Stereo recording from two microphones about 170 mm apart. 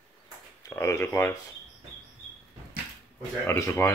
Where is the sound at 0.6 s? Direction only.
15° left (ahead or behind).